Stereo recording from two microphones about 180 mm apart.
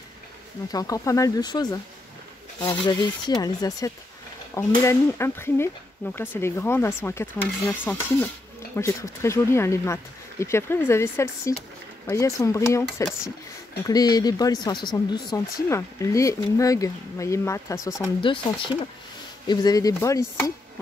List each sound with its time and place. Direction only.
0.7 s speech: 20° left (ahead or behind)
19.4 s speech: 20° left (ahead or behind)